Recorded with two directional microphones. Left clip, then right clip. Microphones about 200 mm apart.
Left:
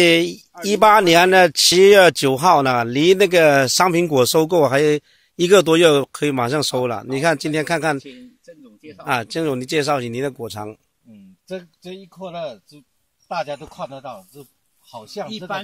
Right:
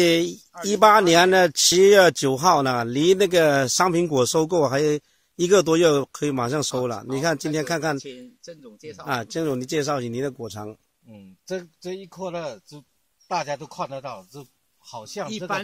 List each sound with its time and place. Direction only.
0.0 s speech: 5° left (ahead or behind)
8.6 s a man's voice: 15° right (ahead or behind)
9.0 s speech: 10° left (ahead or behind)
11.9 s a man's voice: 15° right (ahead or behind)